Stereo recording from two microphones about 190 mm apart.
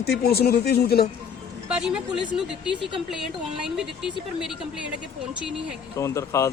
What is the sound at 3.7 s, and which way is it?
Speech, 5° right (ahead or behind).